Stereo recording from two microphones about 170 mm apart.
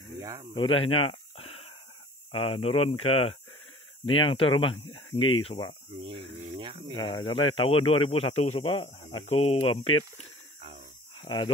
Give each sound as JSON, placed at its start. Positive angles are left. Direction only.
{"t": 0.2, "sound": "speech", "side_deg": -20}
{"t": 0.6, "sound": "a sound", "side_deg": 35}
{"t": 2.3, "sound": "a man's voice", "side_deg": 35}
{"t": 6.6, "sound": "a sound", "side_deg": -30}
{"t": 7.0, "sound": "a man's voice", "side_deg": 25}
{"t": 11.2, "sound": "speech", "side_deg": 30}